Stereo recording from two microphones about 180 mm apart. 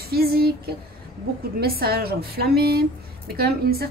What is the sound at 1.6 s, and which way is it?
A woman's voice, 60° right (ahead or behind).